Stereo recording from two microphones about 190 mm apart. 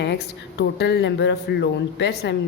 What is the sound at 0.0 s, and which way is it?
Speech, 65° left (ahead or behind).